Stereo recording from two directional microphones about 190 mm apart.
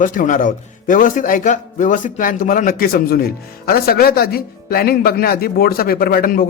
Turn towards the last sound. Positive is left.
turn(degrees=50)  # may be behind; listen again after turning